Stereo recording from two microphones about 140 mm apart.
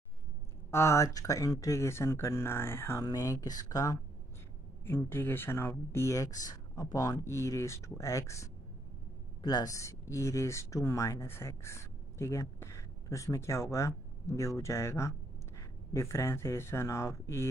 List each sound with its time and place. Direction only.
0.7 s speech: 20° left (ahead or behind)